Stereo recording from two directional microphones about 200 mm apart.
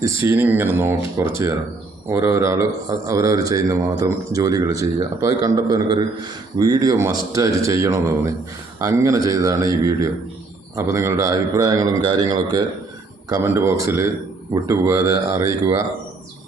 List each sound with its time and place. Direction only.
0.0 s speech: 15° right (ahead or behind)